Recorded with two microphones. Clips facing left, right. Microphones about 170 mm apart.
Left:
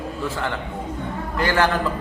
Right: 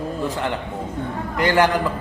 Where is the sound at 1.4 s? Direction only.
20° right (ahead or behind).